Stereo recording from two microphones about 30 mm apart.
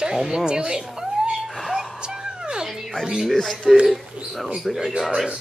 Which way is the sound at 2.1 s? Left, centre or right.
Right.